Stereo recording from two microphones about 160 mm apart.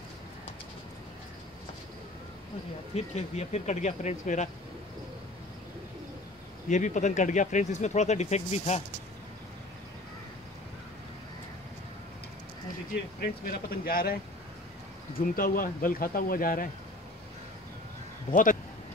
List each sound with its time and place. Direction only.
2.9 s speech: 45° left (ahead or behind)
6.7 s speech: 50° left (ahead or behind)
13.2 s speech: 65° left (ahead or behind)
15.3 s speech: 65° left (ahead or behind)
18.3 s speech: 55° left (ahead or behind)